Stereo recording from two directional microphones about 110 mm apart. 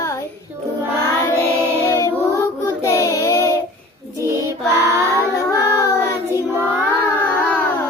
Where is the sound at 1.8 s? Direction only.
20° left (ahead or behind).